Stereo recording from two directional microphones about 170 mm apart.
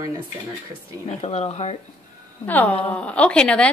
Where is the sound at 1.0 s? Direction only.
40° left (ahead or behind).